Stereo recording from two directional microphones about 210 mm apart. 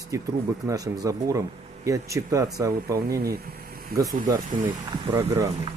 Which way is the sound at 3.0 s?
45° right (ahead or behind).